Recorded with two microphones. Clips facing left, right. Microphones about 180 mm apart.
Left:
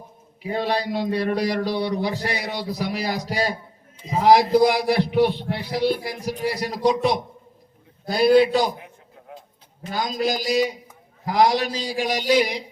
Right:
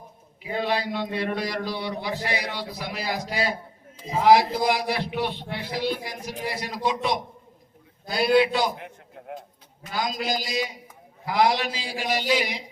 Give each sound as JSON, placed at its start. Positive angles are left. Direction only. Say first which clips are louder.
{"t": 0.5, "sound": "a man's voice", "louder": "left 2 dB", "side_deg": 40}
{"t": 8.7, "sound": "a sound", "louder": "right 2 dB", "side_deg": -65}
{"t": 9.8, "sound": "speech", "louder": "left 4 dB", "side_deg": 35}